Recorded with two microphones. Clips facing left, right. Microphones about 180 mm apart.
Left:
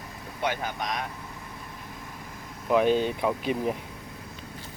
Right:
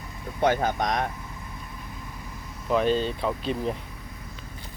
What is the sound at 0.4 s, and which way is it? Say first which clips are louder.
Speech: right 7 dB; 45° right (ahead or behind).